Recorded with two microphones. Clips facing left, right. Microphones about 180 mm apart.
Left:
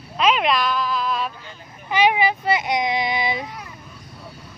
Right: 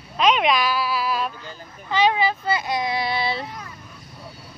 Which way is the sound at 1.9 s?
15° left (ahead or behind).